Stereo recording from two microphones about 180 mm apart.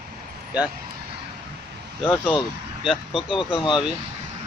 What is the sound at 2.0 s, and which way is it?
Speech, 10° left (ahead or behind).